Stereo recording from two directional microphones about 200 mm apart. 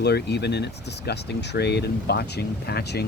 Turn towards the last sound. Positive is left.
turn(degrees=55)  # may be behind; listen again after turning